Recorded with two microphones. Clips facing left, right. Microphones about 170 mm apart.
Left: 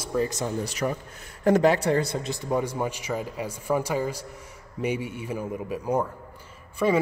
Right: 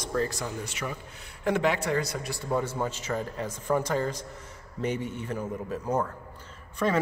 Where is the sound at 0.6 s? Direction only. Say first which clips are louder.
Left 7 dB; 40° left (ahead or behind).